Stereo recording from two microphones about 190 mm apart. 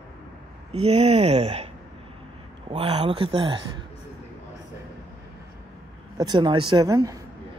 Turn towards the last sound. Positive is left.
turn(degrees=-20)  # may be behind; listen again after turning